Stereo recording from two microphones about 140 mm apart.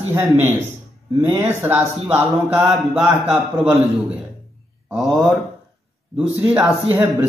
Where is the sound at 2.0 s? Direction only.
20° right (ahead or behind).